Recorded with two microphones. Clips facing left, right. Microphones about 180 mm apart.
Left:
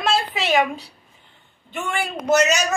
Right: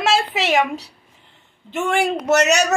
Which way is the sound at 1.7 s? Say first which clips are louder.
Right 7 dB; 85° right.